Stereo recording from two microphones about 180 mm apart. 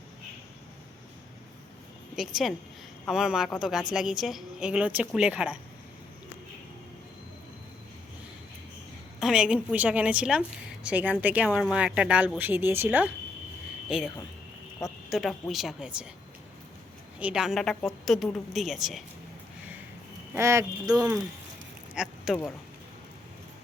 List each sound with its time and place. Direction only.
2.1 s a woman's voice: centre (ahead or behind)
9.2 s a woman's voice: 5° right (ahead or behind)
17.2 s a woman's voice: 5° right (ahead or behind)
20.3 s a woman's voice: 15° right (ahead or behind)
21.9 s speech: 5° right (ahead or behind)